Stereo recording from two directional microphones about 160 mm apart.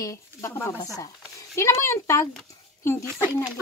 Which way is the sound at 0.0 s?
20° left (ahead or behind).